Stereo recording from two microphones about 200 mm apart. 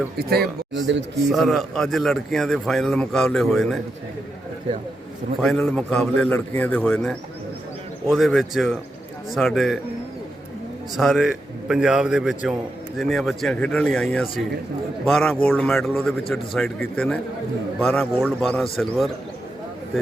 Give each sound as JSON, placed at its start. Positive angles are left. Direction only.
{"t": 0.2, "sound": "a man's voice", "side_deg": -50}
{"t": 1.3, "sound": "a man's voice", "side_deg": 0}
{"t": 5.4, "sound": "a man's voice", "side_deg": 0}
{"t": 10.9, "sound": "a man's voice", "side_deg": 0}